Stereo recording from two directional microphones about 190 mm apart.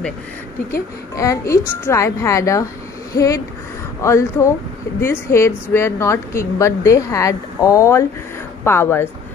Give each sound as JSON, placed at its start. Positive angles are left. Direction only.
{"t": 1.1, "sound": "a woman's voice", "side_deg": 15}